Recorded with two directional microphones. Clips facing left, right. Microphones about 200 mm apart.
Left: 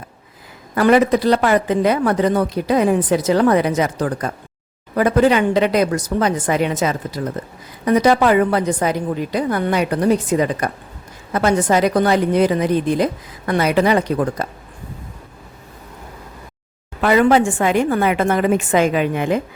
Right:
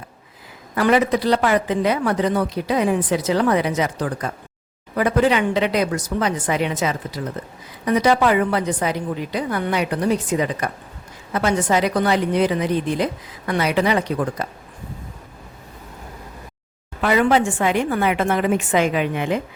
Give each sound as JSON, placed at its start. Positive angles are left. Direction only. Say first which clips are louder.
{"t": 0.8, "sound": "speech", "louder": "left 4 dB", "side_deg": 45}
{"t": 17.0, "sound": "speech", "louder": "left 4 dB", "side_deg": 45}